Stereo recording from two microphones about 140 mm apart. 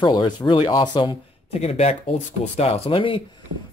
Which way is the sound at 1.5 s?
45° left (ahead or behind).